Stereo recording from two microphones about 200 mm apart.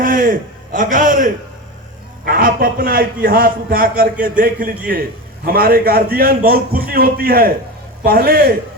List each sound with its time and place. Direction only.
0.0 s a man's voice: 45° right (ahead or behind)